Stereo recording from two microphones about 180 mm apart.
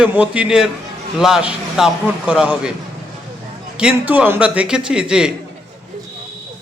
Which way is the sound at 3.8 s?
5° right (ahead or behind).